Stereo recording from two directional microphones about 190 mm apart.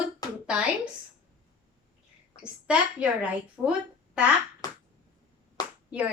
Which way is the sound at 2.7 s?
5° right (ahead or behind).